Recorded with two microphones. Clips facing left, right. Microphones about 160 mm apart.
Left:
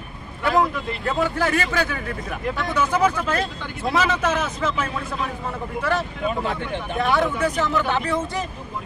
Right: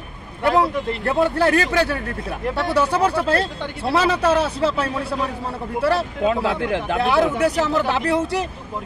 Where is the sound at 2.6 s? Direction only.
35° right (ahead or behind).